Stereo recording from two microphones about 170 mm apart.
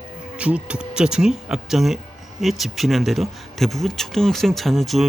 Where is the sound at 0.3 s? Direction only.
5° right (ahead or behind).